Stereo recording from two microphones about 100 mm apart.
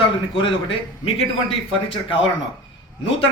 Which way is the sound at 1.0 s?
65° left (ahead or behind).